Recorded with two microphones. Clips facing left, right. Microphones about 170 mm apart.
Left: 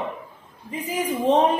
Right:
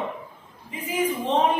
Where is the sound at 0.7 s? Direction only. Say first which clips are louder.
Even; 35° left (ahead or behind).